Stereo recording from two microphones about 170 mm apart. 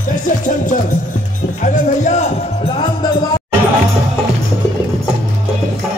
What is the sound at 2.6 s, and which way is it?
Music, 25° left (ahead or behind).